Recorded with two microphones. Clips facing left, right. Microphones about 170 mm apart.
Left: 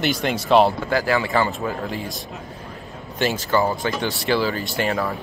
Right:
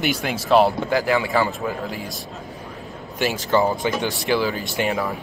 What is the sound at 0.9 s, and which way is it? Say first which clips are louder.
Speech: right 1 dB; 15° right (ahead or behind).